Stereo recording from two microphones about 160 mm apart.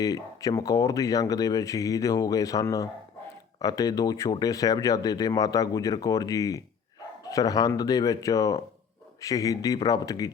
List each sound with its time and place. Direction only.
0.0 s speech: 20° left (ahead or behind)